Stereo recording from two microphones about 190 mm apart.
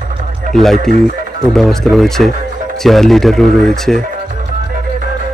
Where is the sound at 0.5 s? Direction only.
45° right (ahead or behind).